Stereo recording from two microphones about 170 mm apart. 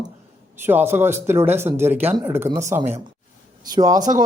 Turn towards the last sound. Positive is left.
turn(degrees=-20)  # may be behind; listen again after turning